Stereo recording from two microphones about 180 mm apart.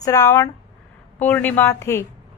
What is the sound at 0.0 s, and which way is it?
A woman's voice, 20° left (ahead or behind).